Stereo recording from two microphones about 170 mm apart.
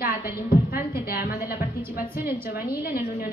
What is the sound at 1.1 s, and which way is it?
A woman's voice, 60° left (ahead or behind).